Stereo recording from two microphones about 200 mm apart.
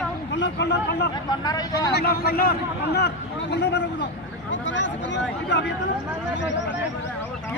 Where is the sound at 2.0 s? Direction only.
50° left (ahead or behind); by 5.2 s 65° left (ahead or behind).